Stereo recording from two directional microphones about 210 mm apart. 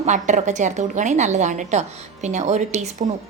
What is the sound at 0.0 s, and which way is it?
A woman's voice, 35° right (ahead or behind).